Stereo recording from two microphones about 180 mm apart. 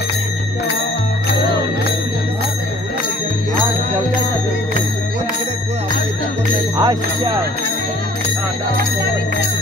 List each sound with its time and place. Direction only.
6.8 s speech: 20° right (ahead or behind)